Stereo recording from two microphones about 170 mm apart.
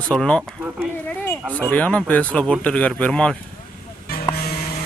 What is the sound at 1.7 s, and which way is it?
Speech, 5° left (ahead or behind).